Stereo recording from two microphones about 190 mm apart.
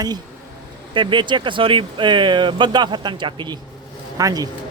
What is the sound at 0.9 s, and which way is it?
A man's voice, 25° right (ahead or behind).